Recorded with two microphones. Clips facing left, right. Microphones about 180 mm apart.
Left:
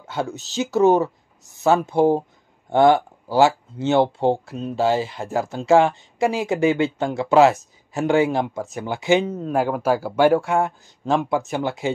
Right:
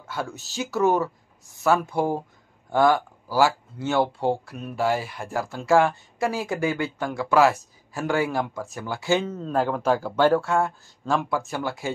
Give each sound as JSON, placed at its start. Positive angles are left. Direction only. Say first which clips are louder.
{"t": 0.0, "sound": "speech", "louder": "left 5 dB", "side_deg": 20}